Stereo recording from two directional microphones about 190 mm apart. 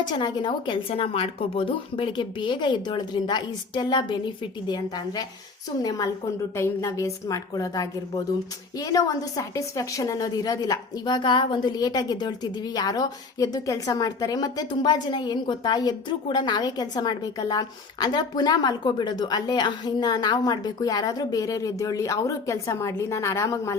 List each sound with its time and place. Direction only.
0.1 s a woman's voice: 25° left (ahead or behind)
6.6 s a woman's voice: 15° left (ahead or behind)